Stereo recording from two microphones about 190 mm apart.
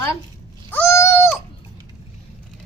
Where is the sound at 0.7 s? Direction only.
15° left (ahead or behind).